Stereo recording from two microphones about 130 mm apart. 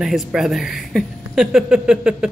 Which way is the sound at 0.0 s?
5° right (ahead or behind).